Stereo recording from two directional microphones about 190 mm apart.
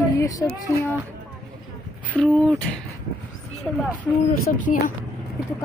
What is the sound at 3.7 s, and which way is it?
Speech, 5° left (ahead or behind).